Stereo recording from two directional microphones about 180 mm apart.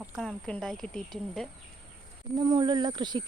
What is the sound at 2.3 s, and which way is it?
Speech, 25° right (ahead or behind).